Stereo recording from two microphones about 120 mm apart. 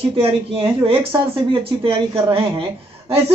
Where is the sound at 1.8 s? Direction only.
45° right (ahead or behind).